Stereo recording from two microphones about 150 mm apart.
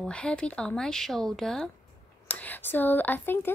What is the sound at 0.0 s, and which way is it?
Speech, 5° left (ahead or behind).